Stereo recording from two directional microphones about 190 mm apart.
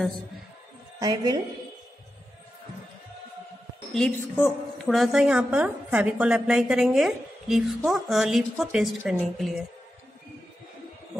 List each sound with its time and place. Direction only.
0.9 s a woman's voice: 20° right (ahead or behind)
4.4 s a woman's voice: centre (ahead or behind)